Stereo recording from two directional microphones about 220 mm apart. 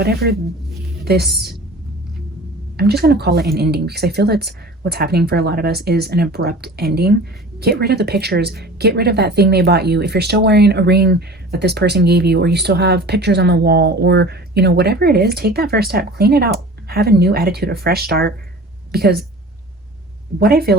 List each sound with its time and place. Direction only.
0.0 s speech: 45° right (ahead or behind)
2.7 s speech: 45° right (ahead or behind)
20.4 s speech: 45° right (ahead or behind)